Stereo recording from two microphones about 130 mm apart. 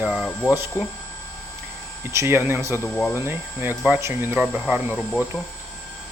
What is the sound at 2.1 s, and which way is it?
Speech, 20° right (ahead or behind).